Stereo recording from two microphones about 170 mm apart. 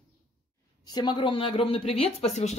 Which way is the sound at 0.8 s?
25° left (ahead or behind).